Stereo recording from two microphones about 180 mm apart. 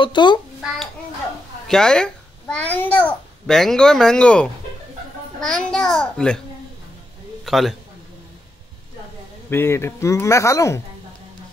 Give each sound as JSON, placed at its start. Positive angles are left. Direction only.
{"t": 0.0, "sound": "a child's voice", "side_deg": 25}
{"t": 1.7, "sound": "a child's voice", "side_deg": 5}
{"t": 7.4, "sound": "a man's voice", "side_deg": 0}
{"t": 9.5, "sound": "speech", "side_deg": 15}